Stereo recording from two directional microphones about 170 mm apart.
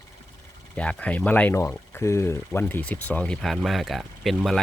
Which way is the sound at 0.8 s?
5° left (ahead or behind).